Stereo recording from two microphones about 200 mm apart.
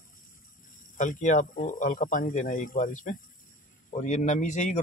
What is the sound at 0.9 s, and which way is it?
Speech, 40° left (ahead or behind).